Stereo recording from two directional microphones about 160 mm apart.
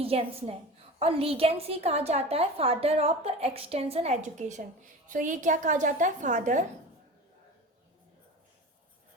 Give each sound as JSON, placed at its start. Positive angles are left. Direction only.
{"t": 0.0, "sound": "a woman's voice", "side_deg": -35}